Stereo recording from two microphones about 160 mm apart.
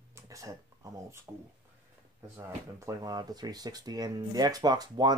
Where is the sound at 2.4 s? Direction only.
20° right (ahead or behind).